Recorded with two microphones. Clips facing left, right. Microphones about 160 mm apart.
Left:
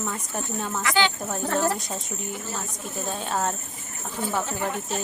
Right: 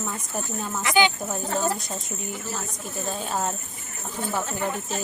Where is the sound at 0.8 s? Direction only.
20° right (ahead or behind).